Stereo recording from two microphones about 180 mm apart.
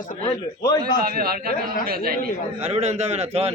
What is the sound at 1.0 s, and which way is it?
A man's voice, 55° right (ahead or behind).